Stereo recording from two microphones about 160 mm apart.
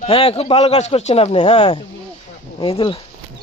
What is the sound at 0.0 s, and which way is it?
A man's voice, 35° left (ahead or behind).